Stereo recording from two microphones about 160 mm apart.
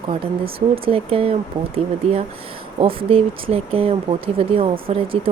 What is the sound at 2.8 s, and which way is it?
Speech, 35° right (ahead or behind).